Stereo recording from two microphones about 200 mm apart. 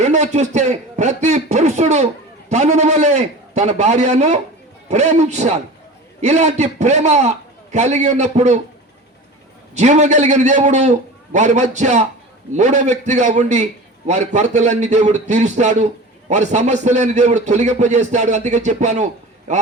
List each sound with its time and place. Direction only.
0.0 s a sound: 35° right (ahead or behind)
4.9 s speech: 35° right (ahead or behind)
9.7 s a man's voice: 35° right (ahead or behind)